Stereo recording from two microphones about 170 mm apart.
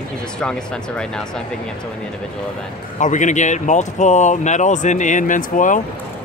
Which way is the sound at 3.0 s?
45° left (ahead or behind).